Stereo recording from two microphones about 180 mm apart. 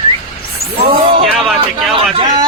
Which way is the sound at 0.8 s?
30° right (ahead or behind).